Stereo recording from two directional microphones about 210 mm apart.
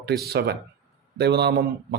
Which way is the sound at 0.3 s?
50° right (ahead or behind).